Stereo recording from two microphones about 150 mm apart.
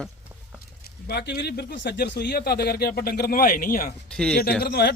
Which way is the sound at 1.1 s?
90° left.